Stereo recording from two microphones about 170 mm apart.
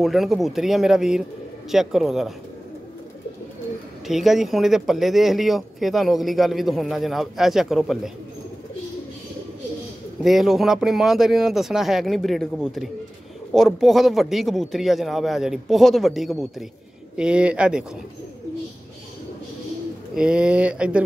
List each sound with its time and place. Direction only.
0.0 s speech: centre (ahead or behind)
4.1 s speech: centre (ahead or behind)
10.2 s speech: centre (ahead or behind)
20.2 s speech: 5° right (ahead or behind)